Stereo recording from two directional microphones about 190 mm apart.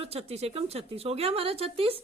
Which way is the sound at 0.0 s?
30° right (ahead or behind).